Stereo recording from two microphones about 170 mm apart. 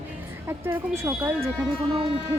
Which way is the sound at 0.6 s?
15° right (ahead or behind).